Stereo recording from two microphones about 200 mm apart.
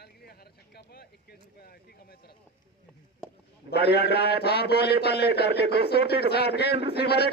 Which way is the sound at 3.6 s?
55° left (ahead or behind).